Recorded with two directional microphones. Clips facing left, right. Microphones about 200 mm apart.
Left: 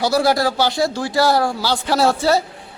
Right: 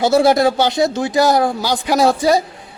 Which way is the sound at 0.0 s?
25° right (ahead or behind).